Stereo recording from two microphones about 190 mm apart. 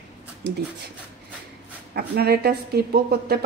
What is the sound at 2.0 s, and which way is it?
A woman's voice, 55° right (ahead or behind).